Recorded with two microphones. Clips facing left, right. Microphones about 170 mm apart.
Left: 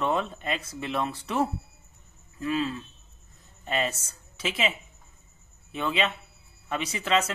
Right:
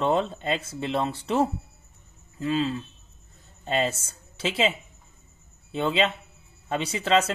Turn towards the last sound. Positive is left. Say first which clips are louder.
# right 3 dB
turn(degrees=-30)  # may be behind; listen again after turning